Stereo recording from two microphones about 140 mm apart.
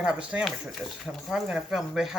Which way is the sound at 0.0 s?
5° right (ahead or behind).